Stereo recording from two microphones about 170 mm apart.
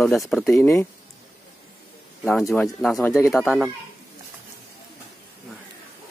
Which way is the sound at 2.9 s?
15° left (ahead or behind).